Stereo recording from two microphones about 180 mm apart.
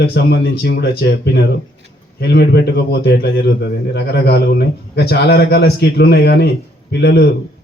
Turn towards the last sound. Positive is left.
turn(degrees=65)  # may be behind; listen again after turning